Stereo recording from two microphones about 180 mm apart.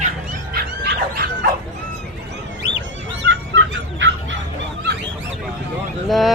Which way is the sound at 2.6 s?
80° right.